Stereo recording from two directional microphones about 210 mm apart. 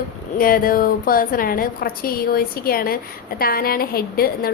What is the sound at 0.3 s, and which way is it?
A woman's voice, 40° left (ahead or behind).